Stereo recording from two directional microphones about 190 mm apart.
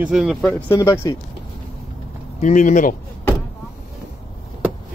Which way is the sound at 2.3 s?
40° left (ahead or behind).